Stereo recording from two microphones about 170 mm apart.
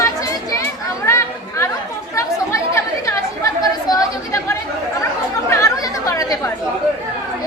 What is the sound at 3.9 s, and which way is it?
Chatter, 20° left (ahead or behind).